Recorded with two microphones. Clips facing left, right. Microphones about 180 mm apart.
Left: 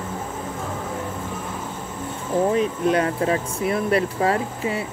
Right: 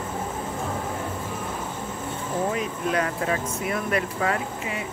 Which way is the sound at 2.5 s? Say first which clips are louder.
Left 6 dB; 30° left (ahead or behind).